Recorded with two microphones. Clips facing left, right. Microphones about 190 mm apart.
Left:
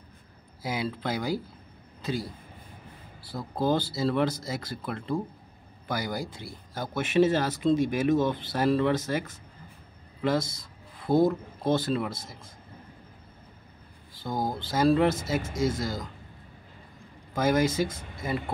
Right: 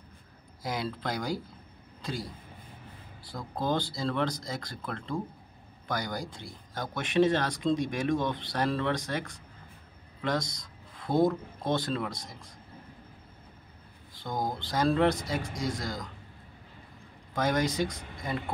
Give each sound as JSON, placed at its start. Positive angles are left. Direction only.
{"t": 0.6, "sound": "speech", "side_deg": 5}
{"t": 2.0, "sound": "a sound", "side_deg": 5}
{"t": 3.3, "sound": "speech", "side_deg": 5}
{"t": 14.1, "sound": "speech", "side_deg": 5}
{"t": 17.3, "sound": "speech", "side_deg": 5}